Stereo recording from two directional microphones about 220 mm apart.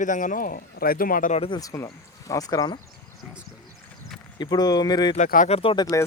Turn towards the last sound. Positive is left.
turn(degrees=20)  # may be behind; listen again after turning